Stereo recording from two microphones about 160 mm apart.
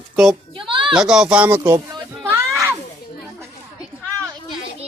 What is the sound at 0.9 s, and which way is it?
Speech, 5° right (ahead or behind).